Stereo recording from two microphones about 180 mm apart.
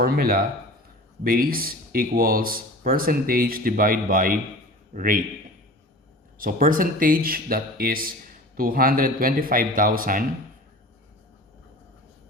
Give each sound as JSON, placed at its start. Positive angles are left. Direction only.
{"t": 0.0, "sound": "speech", "side_deg": -60}
{"t": 6.4, "sound": "speech", "side_deg": -50}